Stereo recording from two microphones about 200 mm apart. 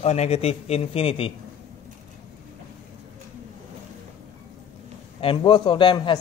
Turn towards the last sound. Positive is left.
turn(degrees=25)  # may be behind; listen again after turning